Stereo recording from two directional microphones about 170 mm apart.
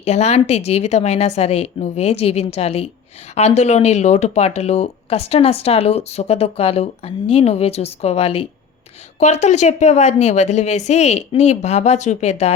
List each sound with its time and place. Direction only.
0.0 s speech: 40° left (ahead or behind)